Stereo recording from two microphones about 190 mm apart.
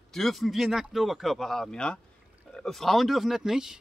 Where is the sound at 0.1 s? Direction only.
Centre (ahead or behind).